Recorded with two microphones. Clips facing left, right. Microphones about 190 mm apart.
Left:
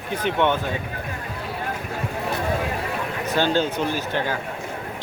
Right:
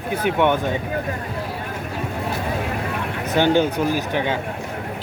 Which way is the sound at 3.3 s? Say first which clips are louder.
Right 4 dB; 15° right (ahead or behind).